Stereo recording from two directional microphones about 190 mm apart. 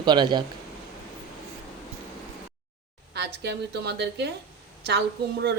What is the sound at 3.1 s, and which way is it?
A woman's voice, 60° right (ahead or behind).